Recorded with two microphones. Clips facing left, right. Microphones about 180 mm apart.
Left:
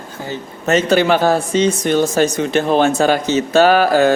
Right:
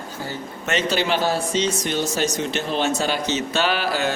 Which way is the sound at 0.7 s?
50° left (ahead or behind).